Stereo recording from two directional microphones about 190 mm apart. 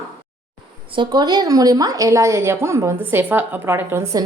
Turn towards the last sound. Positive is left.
turn(degrees=-15)  # may be behind; listen again after turning